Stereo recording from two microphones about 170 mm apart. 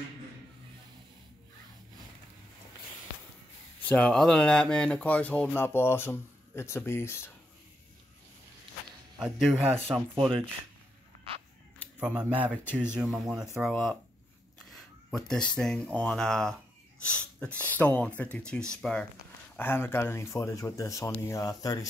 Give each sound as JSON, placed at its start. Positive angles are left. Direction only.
{"t": 3.8, "sound": "speech", "side_deg": 5}
{"t": 9.2, "sound": "speech", "side_deg": 0}
{"t": 12.0, "sound": "speech", "side_deg": -10}